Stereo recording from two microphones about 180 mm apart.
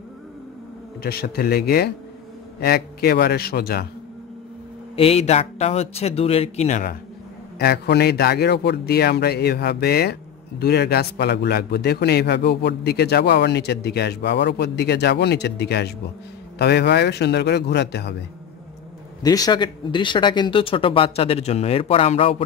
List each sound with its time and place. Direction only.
1.0 s a man's voice: 60° left (ahead or behind)
4.9 s speech: 35° left (ahead or behind)
7.5 s a man's voice: 65° left (ahead or behind)
19.2 s speech: 20° left (ahead or behind)